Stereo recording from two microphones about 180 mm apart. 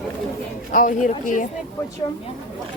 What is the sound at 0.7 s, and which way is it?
Speech, 45° left (ahead or behind).